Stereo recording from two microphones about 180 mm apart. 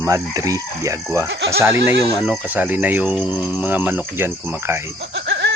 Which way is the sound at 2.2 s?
10° right (ahead or behind).